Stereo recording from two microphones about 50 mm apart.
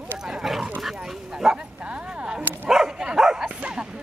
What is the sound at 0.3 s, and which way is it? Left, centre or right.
Dog, centre.